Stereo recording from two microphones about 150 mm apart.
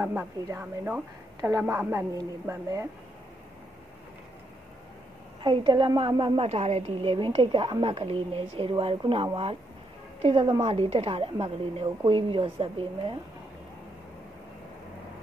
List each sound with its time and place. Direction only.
0.0 s a woman's voice: 15° right (ahead or behind)
5.4 s a woman's voice: 30° right (ahead or behind)